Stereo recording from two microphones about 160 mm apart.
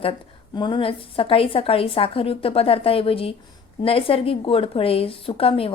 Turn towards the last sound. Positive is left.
turn(degrees=35)  # may be behind; listen again after turning